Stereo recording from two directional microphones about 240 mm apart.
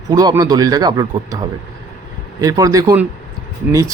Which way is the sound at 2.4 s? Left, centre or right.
Centre.